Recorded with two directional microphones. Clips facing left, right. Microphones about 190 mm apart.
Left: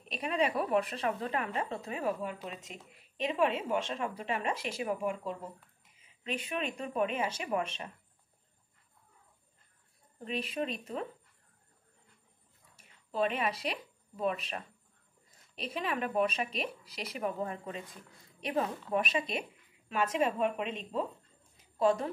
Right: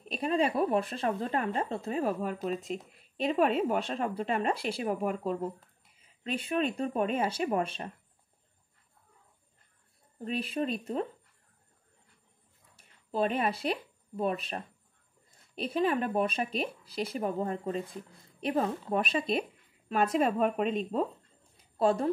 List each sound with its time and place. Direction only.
0.1 s a woman's voice: 35° right (ahead or behind)
6.3 s a woman's voice: 30° right (ahead or behind)
10.2 s a woman's voice: 40° right (ahead or behind)
13.1 s a woman's voice: 35° right (ahead or behind)
15.7 s a woman's voice: 35° right (ahead or behind)